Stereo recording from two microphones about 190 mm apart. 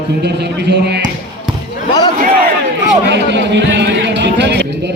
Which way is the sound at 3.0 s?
65° right (ahead or behind).